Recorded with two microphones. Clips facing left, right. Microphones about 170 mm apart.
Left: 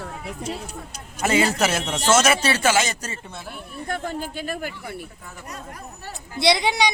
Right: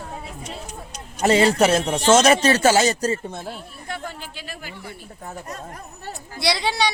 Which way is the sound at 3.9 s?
45° left (ahead or behind).